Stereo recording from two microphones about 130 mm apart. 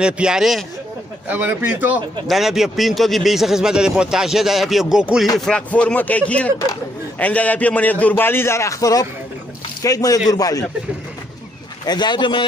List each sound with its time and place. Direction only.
0.0 s a man's voice: 5° right (ahead or behind)
1.3 s speech: 15° right (ahead or behind)
2.2 s a man's voice: centre (ahead or behind)
5.4 s a man's voice: 10° left (ahead or behind); by 10.6 s 25° left (ahead or behind)
11.8 s speech: 35° left (ahead or behind)